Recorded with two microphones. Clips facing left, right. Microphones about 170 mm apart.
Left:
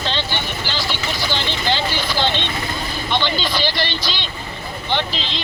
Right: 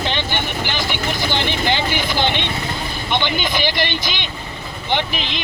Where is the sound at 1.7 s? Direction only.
15° right (ahead or behind).